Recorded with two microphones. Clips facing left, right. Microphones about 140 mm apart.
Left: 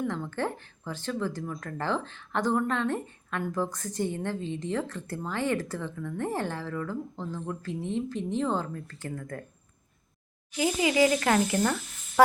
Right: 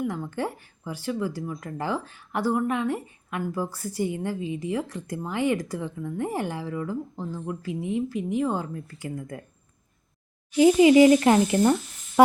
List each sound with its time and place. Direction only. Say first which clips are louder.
0.0 s speech: right 2 dB; 10° right (ahead or behind)
10.6 s speech: right 9 dB; 25° right (ahead or behind)